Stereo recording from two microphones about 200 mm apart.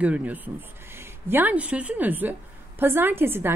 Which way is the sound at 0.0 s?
5° right (ahead or behind).